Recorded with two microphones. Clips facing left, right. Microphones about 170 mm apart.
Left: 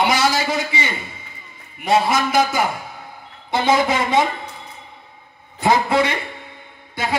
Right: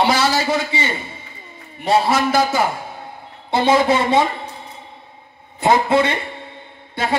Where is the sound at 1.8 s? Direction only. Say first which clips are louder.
Right 1 dB; 30° right (ahead or behind).